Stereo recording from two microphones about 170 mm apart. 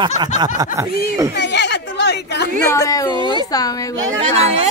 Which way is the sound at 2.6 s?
20° left (ahead or behind).